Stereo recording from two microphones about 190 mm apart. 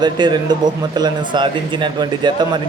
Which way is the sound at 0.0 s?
25° right (ahead or behind).